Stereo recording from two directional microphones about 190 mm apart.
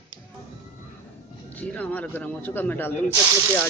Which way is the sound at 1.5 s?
5° left (ahead or behind).